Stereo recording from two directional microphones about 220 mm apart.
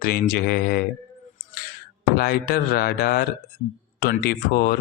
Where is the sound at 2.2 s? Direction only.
45° left (ahead or behind).